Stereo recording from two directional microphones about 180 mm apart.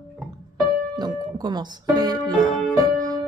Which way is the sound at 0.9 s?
25° right (ahead or behind).